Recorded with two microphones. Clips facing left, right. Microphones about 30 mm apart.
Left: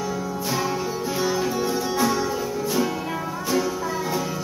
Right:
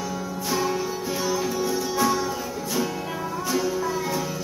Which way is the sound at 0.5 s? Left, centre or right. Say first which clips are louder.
Right 1 dB; centre.